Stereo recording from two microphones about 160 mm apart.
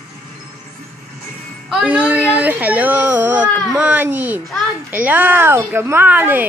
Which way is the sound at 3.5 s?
5° right (ahead or behind).